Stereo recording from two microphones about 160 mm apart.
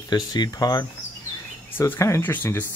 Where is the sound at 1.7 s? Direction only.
15° left (ahead or behind).